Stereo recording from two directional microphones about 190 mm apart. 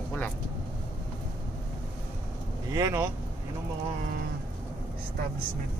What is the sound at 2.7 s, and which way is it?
Speech, 20° right (ahead or behind).